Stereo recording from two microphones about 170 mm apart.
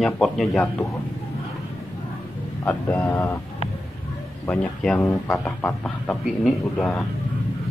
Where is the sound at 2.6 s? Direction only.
15° left (ahead or behind).